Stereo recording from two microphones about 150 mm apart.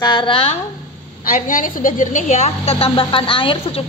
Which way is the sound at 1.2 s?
60° left (ahead or behind).